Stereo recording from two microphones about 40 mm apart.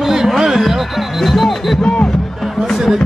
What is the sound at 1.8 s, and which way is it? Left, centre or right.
Speech, left.